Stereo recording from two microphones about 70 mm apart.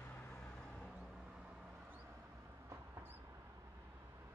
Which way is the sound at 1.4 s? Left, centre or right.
Right.